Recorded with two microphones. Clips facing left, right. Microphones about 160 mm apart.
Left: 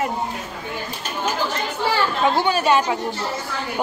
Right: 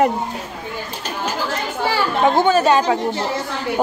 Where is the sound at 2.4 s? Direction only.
45° right (ahead or behind).